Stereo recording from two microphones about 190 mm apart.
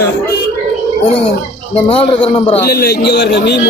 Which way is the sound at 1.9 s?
30° left (ahead or behind).